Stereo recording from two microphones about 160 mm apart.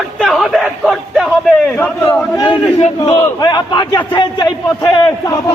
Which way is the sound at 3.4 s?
25° left (ahead or behind).